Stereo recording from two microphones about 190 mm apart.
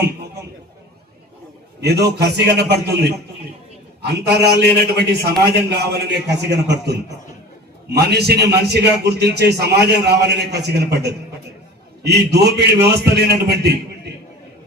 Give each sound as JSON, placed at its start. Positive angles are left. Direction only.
{"t": 1.8, "sound": "a man's voice", "side_deg": -60}
{"t": 4.6, "sound": "a man's voice", "side_deg": -60}